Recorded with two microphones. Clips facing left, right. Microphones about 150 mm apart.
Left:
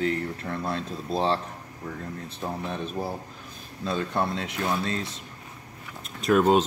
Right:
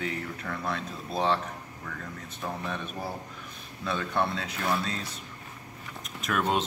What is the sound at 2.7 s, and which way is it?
Mechanisms, 30° left (ahead or behind).